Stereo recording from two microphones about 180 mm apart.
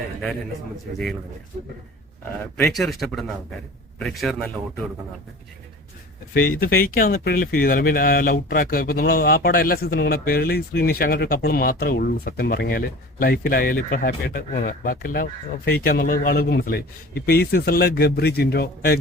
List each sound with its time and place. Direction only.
0.9 s speech: 55° right (ahead or behind)
2.6 s speech: centre (ahead or behind)
6.3 s speech: 55° left (ahead or behind)